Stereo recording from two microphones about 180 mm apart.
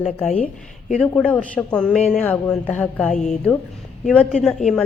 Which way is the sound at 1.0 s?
5° left (ahead or behind).